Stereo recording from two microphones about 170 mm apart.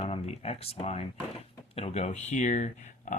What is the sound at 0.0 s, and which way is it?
Speech, 40° left (ahead or behind).